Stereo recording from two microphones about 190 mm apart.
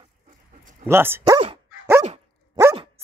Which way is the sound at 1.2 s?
25° right (ahead or behind).